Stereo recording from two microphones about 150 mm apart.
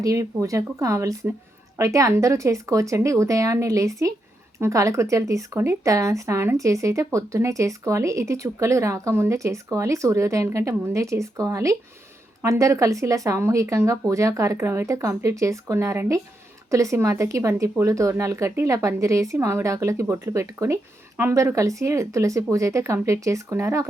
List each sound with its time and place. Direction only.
0.0 s speech: 20° right (ahead or behind)